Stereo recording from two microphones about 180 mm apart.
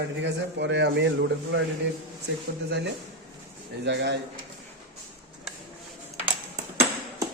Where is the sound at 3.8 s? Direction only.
75° right (ahead or behind).